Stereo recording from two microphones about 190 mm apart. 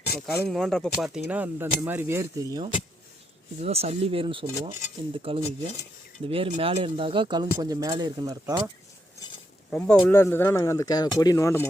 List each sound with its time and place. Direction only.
0.3 s speech: centre (ahead or behind); by 2.6 s 20° right (ahead or behind)
3.6 s speech: 35° right (ahead or behind)
9.6 s speech: 5° left (ahead or behind)